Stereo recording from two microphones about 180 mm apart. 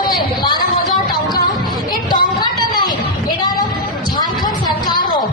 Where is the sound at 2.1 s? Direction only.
25° left (ahead or behind).